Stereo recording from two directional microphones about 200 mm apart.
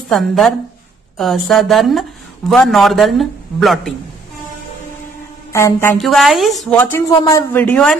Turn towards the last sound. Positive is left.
turn(degrees=5)  # may be behind; listen again after turning